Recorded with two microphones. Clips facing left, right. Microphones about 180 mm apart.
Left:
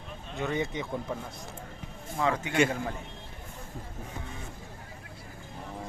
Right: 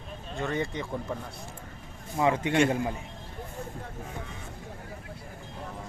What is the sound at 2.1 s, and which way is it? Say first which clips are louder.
Speech: right 4 dB; 25° right (ahead or behind).